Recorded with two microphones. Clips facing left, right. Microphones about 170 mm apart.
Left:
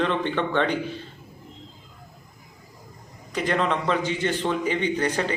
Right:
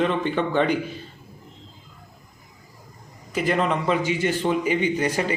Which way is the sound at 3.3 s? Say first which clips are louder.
Right 2 dB; 5° right (ahead or behind).